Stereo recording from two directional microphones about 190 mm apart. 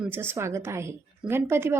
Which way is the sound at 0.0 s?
10° right (ahead or behind).